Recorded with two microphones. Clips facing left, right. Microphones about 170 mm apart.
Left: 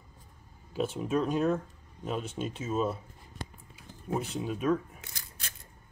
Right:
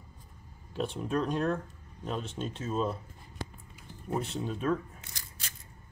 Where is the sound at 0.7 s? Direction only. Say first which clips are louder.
Left 2 dB; 5° left (ahead or behind).